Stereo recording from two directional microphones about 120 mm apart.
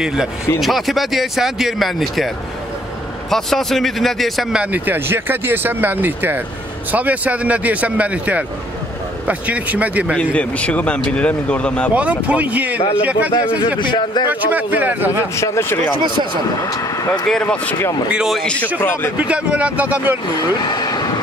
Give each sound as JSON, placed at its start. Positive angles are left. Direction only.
{"t": 0.6, "sound": "speech", "side_deg": 0}
{"t": 10.1, "sound": "speech", "side_deg": 10}
{"t": 11.9, "sound": "speech", "side_deg": -10}
{"t": 13.7, "sound": "speech", "side_deg": 40}
{"t": 14.3, "sound": "speech", "side_deg": -15}
{"t": 15.3, "sound": "speech", "side_deg": 25}
{"t": 17.3, "sound": "speech", "side_deg": 10}
{"t": 18.1, "sound": "speech", "side_deg": 0}
{"t": 18.8, "sound": "speech", "side_deg": 15}
{"t": 19.1, "sound": "speech", "side_deg": -10}
{"t": 20.6, "sound": "train", "side_deg": 35}